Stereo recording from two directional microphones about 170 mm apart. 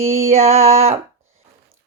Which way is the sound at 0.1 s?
40° right (ahead or behind).